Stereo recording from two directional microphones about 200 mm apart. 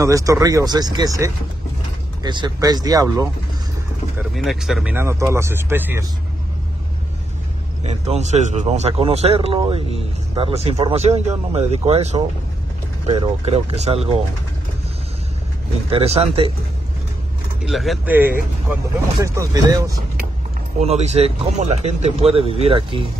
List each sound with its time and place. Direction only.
0.0 s speech: 15° right (ahead or behind)
4.4 s speech: centre (ahead or behind)
7.8 s speech: 35° right (ahead or behind)
15.9 s speech: 30° right (ahead or behind)
17.6 s speech: centre (ahead or behind); by 20.0 s 20° right (ahead or behind)
20.8 s speech: 35° right (ahead or behind)